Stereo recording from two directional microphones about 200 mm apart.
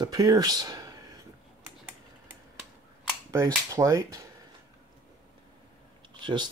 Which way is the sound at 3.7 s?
15° right (ahead or behind).